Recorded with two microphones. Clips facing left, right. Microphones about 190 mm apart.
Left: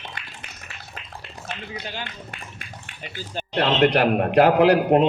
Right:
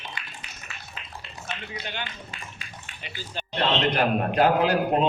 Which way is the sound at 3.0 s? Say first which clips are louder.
Left 4 dB; 45° left (ahead or behind).